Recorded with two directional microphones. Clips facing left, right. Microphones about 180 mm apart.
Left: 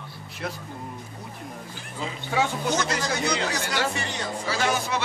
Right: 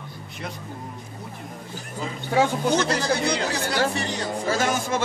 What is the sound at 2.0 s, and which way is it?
Speech, 35° right (ahead or behind).